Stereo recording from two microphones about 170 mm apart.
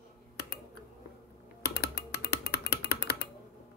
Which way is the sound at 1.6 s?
70° left (ahead or behind).